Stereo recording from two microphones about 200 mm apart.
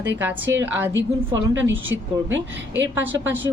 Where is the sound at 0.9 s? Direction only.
70° right (ahead or behind).